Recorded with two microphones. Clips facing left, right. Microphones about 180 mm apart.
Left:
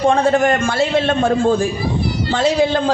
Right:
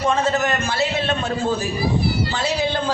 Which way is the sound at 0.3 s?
50° left (ahead or behind).